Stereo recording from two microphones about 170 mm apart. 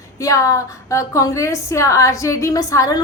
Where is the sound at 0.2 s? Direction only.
20° left (ahead or behind).